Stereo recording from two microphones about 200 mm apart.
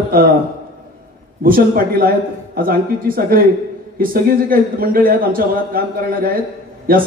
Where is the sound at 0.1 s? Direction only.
45° right (ahead or behind).